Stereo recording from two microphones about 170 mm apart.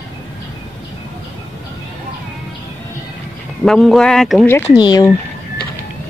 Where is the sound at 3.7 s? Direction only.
Centre (ahead or behind).